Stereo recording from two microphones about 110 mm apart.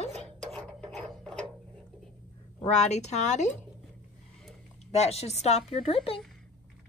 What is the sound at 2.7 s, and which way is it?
Speech, 90° left.